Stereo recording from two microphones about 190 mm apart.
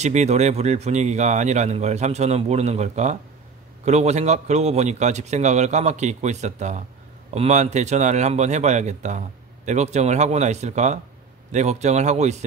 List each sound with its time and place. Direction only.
0.0 s speech: 35° right (ahead or behind)